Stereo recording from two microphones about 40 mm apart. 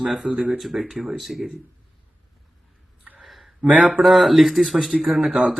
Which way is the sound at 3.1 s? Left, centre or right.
Centre.